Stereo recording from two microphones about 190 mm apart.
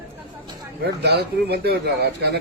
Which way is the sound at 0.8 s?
60° right (ahead or behind).